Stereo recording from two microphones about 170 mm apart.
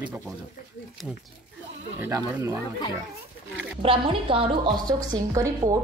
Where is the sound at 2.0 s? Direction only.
15° right (ahead or behind).